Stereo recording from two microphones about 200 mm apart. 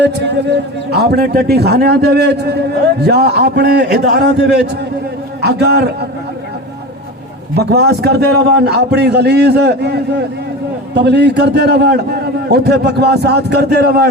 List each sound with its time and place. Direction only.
0.0 s a man's voice: 60° right (ahead or behind)
7.5 s a man's voice: 55° right (ahead or behind)